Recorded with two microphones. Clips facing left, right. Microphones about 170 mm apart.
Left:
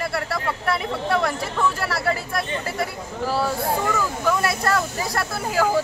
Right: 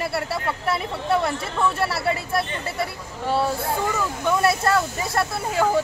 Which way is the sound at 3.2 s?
25° right (ahead or behind).